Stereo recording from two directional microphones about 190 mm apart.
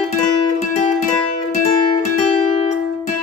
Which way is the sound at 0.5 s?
40° left (ahead or behind).